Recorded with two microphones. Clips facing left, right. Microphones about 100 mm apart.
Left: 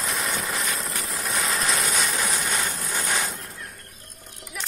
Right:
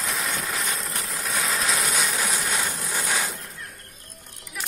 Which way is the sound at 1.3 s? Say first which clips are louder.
Even; centre (ahead or behind).